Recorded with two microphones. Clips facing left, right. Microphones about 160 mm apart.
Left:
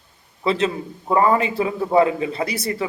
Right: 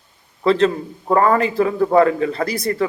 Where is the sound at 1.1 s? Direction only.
15° left (ahead or behind).